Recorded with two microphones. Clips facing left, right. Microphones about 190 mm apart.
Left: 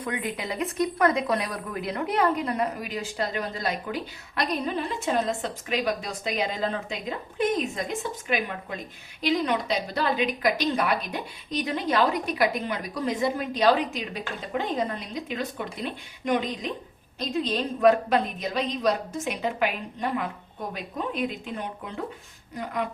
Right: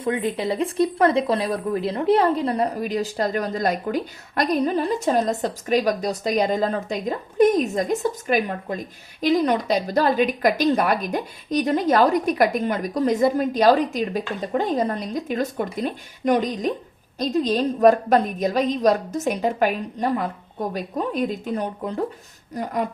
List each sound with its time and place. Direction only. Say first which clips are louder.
0.0 s a woman's voice: right 8 dB; 30° right (ahead or behind)